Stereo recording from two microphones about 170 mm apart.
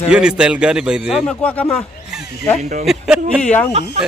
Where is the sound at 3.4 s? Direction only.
5° left (ahead or behind).